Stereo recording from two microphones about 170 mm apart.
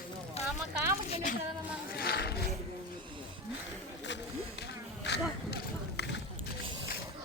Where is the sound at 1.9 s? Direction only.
65° left (ahead or behind).